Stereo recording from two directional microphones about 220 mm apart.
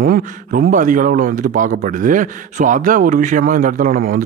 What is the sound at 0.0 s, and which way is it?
Speech, 40° right (ahead or behind).